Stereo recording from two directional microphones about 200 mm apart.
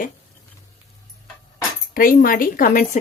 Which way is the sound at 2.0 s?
45° left (ahead or behind).